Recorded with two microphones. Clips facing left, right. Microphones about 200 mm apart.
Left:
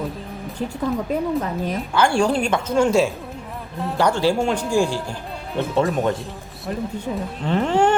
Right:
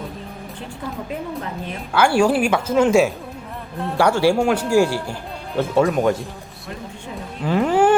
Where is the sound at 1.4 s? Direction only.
40° left (ahead or behind).